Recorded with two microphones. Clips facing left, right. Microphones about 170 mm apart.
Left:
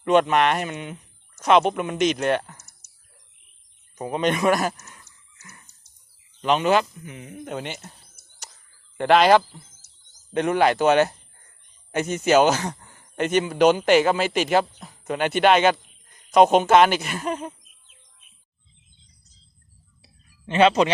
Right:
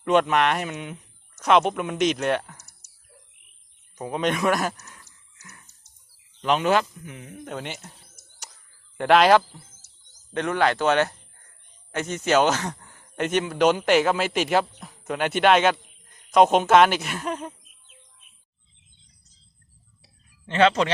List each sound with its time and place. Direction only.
0.0 s speech: centre (ahead or behind)
3.9 s speech: centre (ahead or behind)
5.4 s a sound: centre (ahead or behind)
6.4 s speech: centre (ahead or behind)
9.0 s speech: centre (ahead or behind)
10.2 s speech: 10° left (ahead or behind)
20.5 s speech: 15° left (ahead or behind)